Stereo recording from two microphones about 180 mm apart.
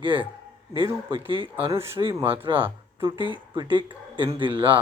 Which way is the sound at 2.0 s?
30° right (ahead or behind).